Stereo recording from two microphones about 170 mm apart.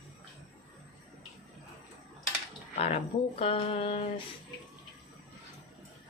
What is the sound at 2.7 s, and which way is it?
Speech, 40° left (ahead or behind).